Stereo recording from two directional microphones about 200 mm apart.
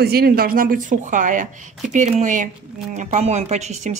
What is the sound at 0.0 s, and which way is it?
A woman's voice, 50° right (ahead or behind).